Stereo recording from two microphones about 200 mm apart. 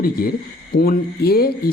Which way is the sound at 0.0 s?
45° left (ahead or behind).